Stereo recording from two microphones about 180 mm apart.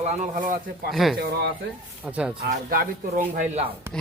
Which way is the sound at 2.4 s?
55° right (ahead or behind).